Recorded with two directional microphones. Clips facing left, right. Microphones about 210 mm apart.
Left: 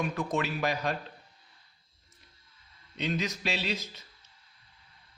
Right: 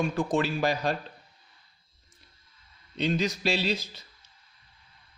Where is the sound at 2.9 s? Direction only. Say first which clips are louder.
Right 5 dB; 30° right (ahead or behind).